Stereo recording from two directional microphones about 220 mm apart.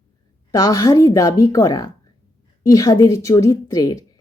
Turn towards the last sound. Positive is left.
turn(degrees=15)  # may be behind; listen again after turning